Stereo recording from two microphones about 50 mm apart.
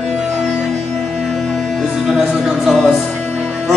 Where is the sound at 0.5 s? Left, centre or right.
Centre.